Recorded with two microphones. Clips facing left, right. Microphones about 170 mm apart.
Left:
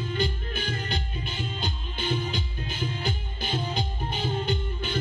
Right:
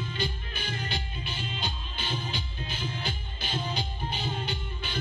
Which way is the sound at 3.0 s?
45° left (ahead or behind).